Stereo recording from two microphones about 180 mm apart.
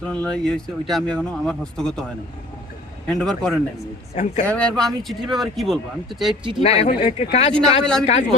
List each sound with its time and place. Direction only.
0.1 s speech: 5° left (ahead or behind)
3.2 s speech: 5° left (ahead or behind)
4.1 s speech: 40° left (ahead or behind)
4.4 s speech: 5° left (ahead or behind)
6.6 s speech: 35° left (ahead or behind)
7.5 s speech: 5° left (ahead or behind)
8.0 s speech: 40° left (ahead or behind)